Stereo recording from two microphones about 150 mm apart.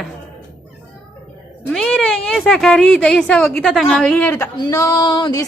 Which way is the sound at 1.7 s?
5° left (ahead or behind).